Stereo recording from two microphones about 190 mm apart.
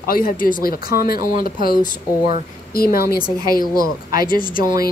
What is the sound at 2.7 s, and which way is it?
Speech, 50° left (ahead or behind).